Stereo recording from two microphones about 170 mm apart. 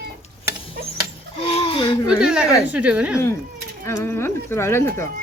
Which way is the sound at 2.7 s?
10° right (ahead or behind).